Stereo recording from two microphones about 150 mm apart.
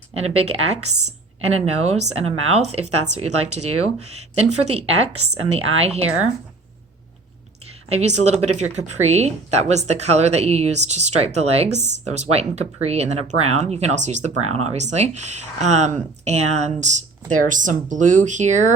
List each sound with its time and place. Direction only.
0.2 s speech: 45° right (ahead or behind)
7.9 s speech: 45° right (ahead or behind)